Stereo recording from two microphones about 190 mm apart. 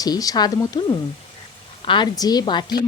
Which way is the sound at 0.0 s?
20° left (ahead or behind).